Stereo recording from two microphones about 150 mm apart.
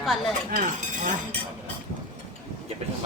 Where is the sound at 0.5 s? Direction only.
60° right (ahead or behind).